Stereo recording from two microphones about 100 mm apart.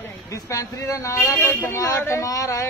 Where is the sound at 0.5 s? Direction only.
30° left (ahead or behind).